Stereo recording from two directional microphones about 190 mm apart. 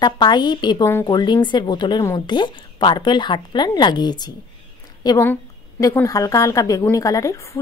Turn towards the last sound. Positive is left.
turn(degrees=15)  # may be behind; listen again after turning